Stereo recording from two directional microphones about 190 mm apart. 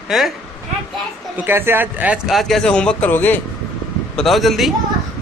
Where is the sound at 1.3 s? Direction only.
10° right (ahead or behind).